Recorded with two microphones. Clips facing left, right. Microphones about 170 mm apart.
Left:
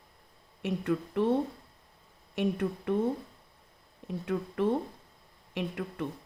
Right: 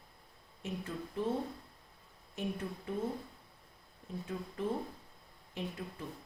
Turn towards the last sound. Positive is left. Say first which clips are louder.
# left 7 dB
turn(degrees=70)  # may be behind; listen again after turning